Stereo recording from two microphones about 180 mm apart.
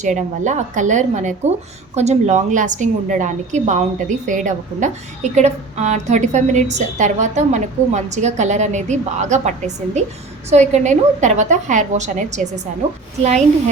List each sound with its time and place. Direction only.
0.0 s a woman's voice: 40° right (ahead or behind)